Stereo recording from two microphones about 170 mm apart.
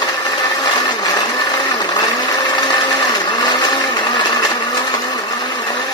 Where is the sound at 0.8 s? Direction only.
20° left (ahead or behind).